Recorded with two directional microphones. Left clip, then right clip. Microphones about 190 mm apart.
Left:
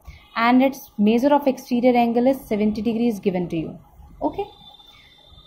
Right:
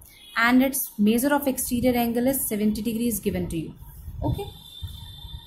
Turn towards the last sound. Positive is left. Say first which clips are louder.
# left 6 dB
turn(degrees=15)  # may be behind; listen again after turning